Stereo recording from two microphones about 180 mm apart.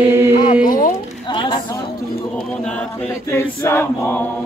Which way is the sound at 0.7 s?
50° left (ahead or behind).